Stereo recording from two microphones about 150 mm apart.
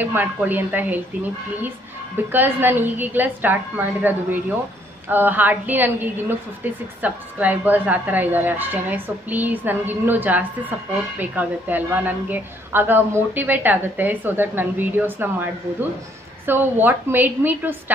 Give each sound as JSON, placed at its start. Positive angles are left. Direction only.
{"t": 0.0, "sound": "a woman's voice", "side_deg": -10}
{"t": 2.3, "sound": "a woman's voice", "side_deg": -15}